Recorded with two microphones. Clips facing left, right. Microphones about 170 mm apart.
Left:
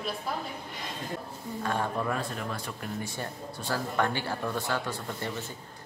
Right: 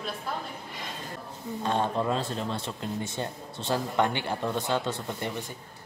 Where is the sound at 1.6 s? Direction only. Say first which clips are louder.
Right 3 dB; 20° right (ahead or behind).